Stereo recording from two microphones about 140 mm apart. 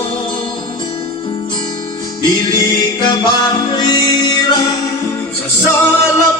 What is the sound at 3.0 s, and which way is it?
Music, 30° left (ahead or behind).